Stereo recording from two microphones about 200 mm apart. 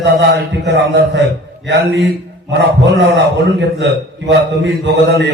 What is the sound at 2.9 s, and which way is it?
A man's voice, 60° right (ahead or behind).